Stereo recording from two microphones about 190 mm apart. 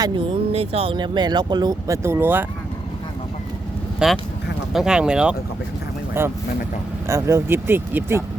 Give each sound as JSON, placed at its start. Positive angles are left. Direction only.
{"t": 0.0, "sound": "speech", "side_deg": -25}
{"t": 4.0, "sound": "speech", "side_deg": -5}